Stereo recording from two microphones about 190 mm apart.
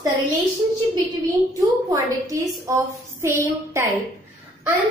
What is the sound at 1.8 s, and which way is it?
A woman's voice, 15° right (ahead or behind).